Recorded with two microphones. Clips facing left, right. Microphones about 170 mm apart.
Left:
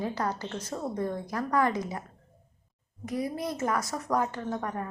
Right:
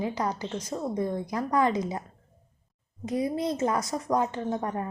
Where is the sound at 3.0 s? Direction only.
20° right (ahead or behind).